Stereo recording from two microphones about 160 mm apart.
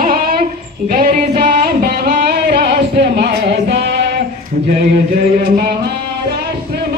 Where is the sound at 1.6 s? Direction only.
65° right (ahead or behind); by 3.6 s 90° right.